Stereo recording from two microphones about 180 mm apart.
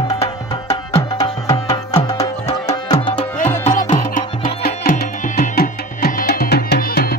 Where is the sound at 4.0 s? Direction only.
50° left (ahead or behind).